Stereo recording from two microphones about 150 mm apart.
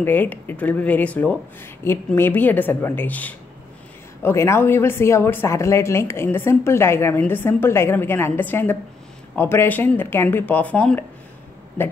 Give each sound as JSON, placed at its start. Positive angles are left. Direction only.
{"t": 0.0, "sound": "speech", "side_deg": 15}